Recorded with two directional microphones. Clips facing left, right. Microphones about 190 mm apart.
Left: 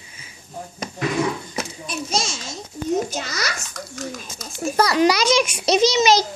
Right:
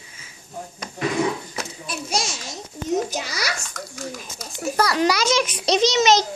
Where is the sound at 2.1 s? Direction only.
15° right (ahead or behind).